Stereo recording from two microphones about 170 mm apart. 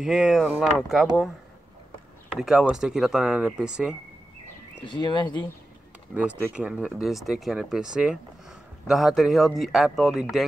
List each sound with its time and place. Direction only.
0.0 s speech: 5° right (ahead or behind)
2.3 s speech: centre (ahead or behind)
4.8 s speech: 30° left (ahead or behind)
6.1 s speech: 5° right (ahead or behind)